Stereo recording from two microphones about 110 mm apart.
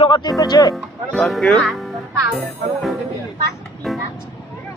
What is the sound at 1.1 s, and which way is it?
Speech, centre (ahead or behind).